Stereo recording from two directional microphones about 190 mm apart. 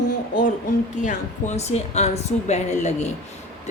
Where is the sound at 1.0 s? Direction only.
35° left (ahead or behind).